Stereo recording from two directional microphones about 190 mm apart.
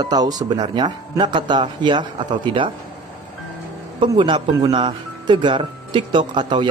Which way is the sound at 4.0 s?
25° right (ahead or behind).